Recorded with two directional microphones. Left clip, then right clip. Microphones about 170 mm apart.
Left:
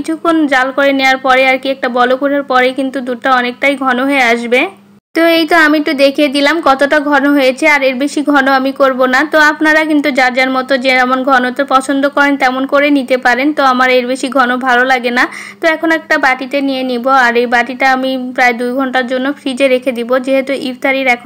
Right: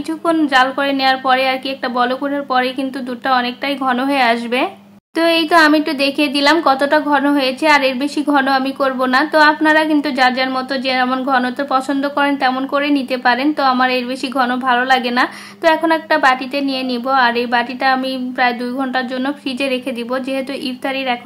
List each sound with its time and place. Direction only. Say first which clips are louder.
0.2 s speech: left 2 dB; 20° left (ahead or behind)